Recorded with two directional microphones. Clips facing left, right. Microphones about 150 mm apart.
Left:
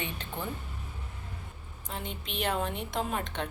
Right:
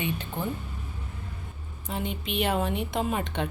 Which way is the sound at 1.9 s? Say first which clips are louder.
Right 7 dB; 5° right (ahead or behind).